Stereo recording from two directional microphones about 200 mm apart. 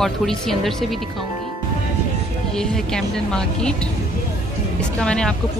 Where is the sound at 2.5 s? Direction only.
5° left (ahead or behind).